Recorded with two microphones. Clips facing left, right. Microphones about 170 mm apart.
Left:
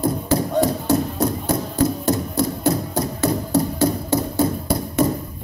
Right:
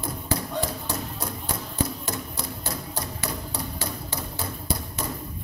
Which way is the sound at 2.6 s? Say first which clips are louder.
Left 13 dB; 45° left (ahead or behind).